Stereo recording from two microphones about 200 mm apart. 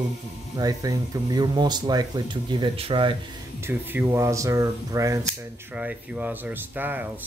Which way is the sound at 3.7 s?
10° right (ahead or behind).